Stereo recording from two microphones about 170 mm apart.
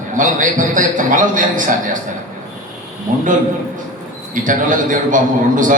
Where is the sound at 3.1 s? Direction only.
50° right (ahead or behind).